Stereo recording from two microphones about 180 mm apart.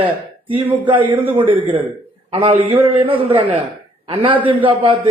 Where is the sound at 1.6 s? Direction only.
10° right (ahead or behind).